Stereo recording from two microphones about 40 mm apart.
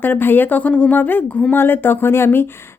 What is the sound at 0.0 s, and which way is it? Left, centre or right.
Speech, left.